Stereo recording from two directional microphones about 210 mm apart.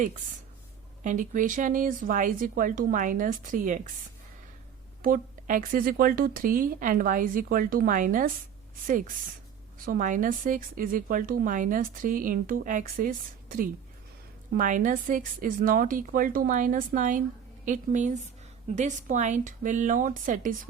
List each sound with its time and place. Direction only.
1.0 s speech: 40° right (ahead or behind)
5.0 s speech: 40° right (ahead or behind)